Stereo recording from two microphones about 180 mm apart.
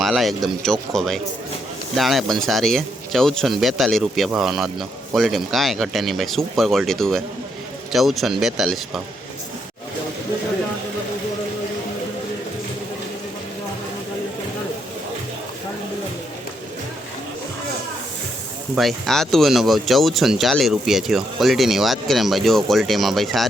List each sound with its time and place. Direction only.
0.0 s speech: centre (ahead or behind)
18.7 s speech: centre (ahead or behind)